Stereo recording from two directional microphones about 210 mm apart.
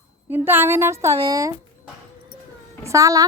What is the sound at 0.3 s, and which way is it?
A woman's voice, 10° right (ahead or behind).